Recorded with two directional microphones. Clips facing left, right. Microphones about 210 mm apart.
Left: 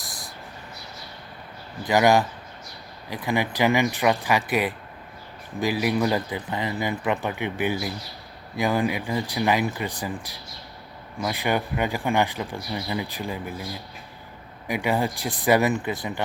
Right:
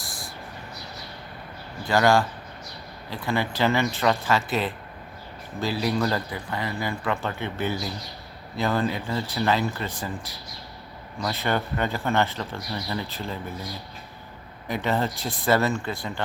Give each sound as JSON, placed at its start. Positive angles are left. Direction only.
{"t": 1.8, "sound": "speech", "side_deg": 15}
{"t": 11.2, "sound": "speech", "side_deg": 15}
{"t": 14.7, "sound": "speech", "side_deg": 10}